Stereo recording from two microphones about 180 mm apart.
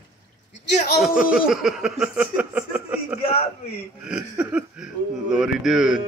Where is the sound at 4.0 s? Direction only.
5° right (ahead or behind).